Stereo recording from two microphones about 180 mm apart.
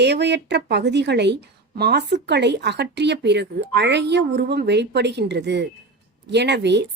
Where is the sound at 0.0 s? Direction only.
70° right (ahead or behind).